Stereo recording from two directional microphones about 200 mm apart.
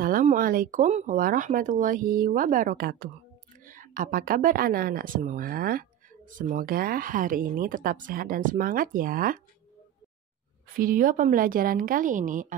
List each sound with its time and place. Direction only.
0.0 s speech: 45° right (ahead or behind)
10.8 s speech: 45° right (ahead or behind)